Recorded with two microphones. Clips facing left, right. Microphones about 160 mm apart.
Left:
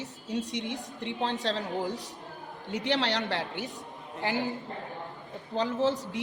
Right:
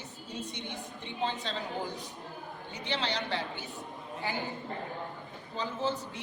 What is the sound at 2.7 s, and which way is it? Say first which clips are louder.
A woman's voice: left 6 dB; 90° left.